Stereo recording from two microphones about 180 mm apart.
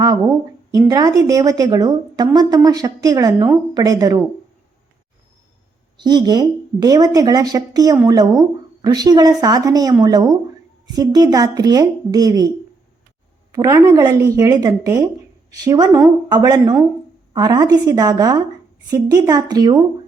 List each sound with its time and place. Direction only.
0.0 s speech: 20° right (ahead or behind)
6.0 s speech: 25° right (ahead or behind)
13.5 s speech: 20° right (ahead or behind)